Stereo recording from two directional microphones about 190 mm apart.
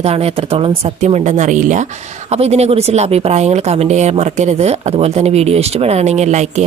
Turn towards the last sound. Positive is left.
turn(degrees=-35)  # may be behind; listen again after turning